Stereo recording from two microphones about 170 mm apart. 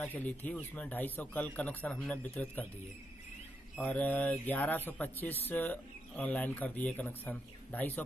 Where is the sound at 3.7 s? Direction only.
5° left (ahead or behind).